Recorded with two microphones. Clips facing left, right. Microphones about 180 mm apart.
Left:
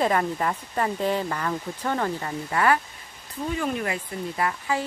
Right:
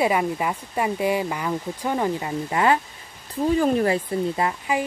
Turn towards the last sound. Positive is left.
turn(degrees=-20)  # may be behind; listen again after turning